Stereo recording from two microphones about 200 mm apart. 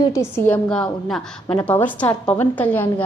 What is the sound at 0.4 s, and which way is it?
A woman's voice, 5° left (ahead or behind).